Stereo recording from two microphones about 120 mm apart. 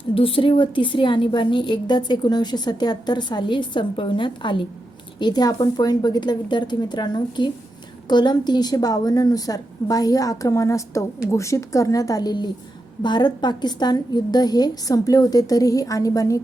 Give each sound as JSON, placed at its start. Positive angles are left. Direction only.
{"t": 0.1, "sound": "a woman's voice", "side_deg": 50}